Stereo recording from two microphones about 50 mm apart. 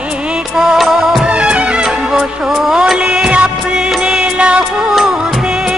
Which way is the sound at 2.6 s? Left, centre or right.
Centre.